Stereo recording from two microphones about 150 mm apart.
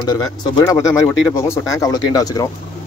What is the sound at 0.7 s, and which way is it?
Speech, 20° left (ahead or behind).